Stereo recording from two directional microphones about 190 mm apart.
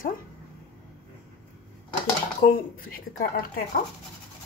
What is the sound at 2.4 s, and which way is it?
Speech, 50° left (ahead or behind).